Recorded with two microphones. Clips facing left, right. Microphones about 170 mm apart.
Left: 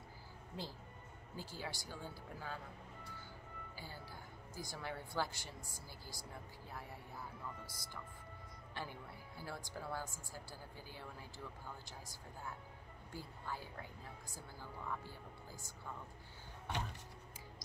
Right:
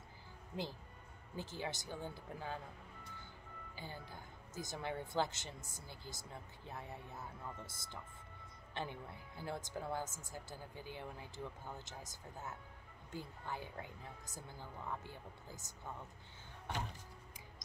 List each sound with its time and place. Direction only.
1.3 s speech: 20° right (ahead or behind)